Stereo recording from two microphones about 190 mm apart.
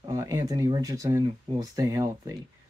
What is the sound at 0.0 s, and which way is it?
Speech, 20° right (ahead or behind).